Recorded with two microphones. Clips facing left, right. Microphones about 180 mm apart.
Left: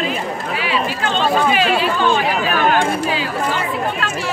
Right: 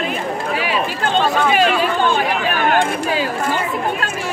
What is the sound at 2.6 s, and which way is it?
Speech, 45° right (ahead or behind).